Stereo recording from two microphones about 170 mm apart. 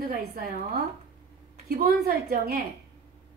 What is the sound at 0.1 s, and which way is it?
Speech, 65° right (ahead or behind).